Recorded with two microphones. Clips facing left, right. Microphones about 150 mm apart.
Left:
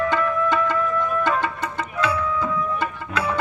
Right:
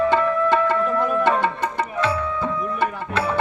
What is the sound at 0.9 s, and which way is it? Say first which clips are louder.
Music: right 3 dB; 75° right (ahead or behind).